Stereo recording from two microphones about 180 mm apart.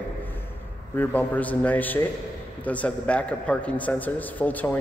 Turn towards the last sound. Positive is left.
turn(degrees=10)  # may be behind; listen again after turning